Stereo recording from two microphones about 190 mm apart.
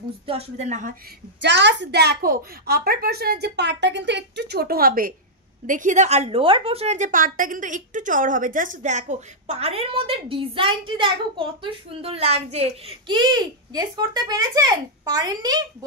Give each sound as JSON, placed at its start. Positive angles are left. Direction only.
{"t": 0.3, "sound": "a woman's voice", "side_deg": -35}
{"t": 1.4, "sound": "a woman's voice", "side_deg": -65}